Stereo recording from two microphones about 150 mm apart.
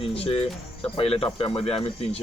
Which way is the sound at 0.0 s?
40° left (ahead or behind).